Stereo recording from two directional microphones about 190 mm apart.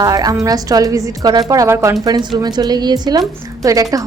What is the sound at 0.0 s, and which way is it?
A woman's voice, 20° right (ahead or behind).